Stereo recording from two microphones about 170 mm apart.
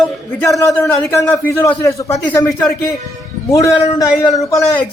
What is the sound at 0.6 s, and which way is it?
A man's voice, 15° left (ahead or behind).